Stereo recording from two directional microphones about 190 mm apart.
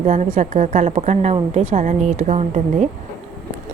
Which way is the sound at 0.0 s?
40° right (ahead or behind).